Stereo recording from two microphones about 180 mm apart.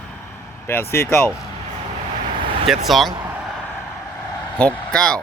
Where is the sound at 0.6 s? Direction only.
15° left (ahead or behind).